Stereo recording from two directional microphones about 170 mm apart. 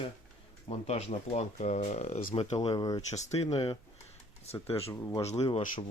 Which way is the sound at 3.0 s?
40° left (ahead or behind).